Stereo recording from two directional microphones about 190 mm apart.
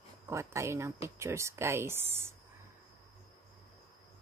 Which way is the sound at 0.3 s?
15° right (ahead or behind).